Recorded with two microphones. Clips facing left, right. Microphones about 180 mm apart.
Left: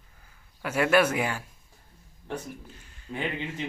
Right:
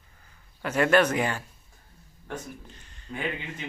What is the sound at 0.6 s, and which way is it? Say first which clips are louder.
Speech: right 1 dB; 10° left (ahead or behind).